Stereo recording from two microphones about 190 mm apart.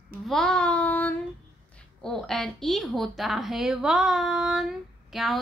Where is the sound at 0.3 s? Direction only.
Centre (ahead or behind).